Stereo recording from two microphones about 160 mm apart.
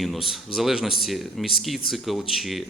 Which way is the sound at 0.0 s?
Centre (ahead or behind).